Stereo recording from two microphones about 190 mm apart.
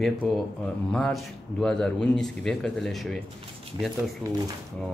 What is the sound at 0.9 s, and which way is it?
A man's voice, 5° left (ahead or behind).